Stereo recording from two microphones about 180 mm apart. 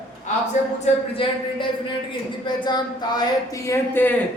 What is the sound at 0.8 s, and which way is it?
A man's voice, 30° left (ahead or behind).